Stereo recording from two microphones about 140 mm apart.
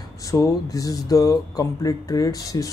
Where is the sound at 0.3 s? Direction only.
25° left (ahead or behind).